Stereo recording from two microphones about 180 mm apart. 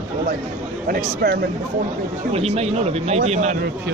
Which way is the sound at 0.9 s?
55° right (ahead or behind).